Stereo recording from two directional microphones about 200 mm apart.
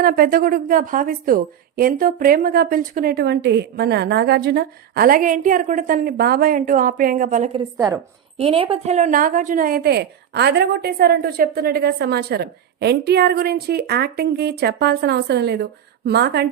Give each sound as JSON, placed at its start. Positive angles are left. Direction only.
{"t": 0.0, "sound": "a woman's voice", "side_deg": -50}
{"t": 7.8, "sound": "a woman's voice", "side_deg": -15}
{"t": 8.4, "sound": "a woman's voice", "side_deg": -30}